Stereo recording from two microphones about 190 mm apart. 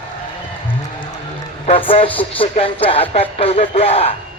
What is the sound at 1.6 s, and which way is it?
Speech, 30° left (ahead or behind).